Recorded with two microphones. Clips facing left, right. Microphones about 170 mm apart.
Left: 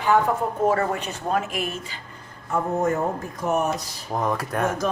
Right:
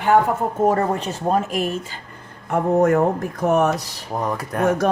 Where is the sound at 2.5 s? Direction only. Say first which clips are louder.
Right 6 dB; 65° right (ahead or behind).